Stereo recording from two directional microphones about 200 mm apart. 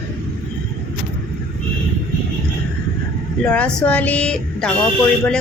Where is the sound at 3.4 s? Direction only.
5° left (ahead or behind).